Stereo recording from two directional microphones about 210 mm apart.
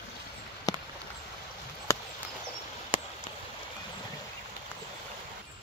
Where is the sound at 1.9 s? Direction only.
15° left (ahead or behind).